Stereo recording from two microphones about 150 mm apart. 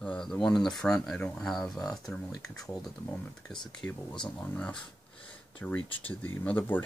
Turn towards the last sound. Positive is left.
turn(degrees=10)  # may be behind; listen again after turning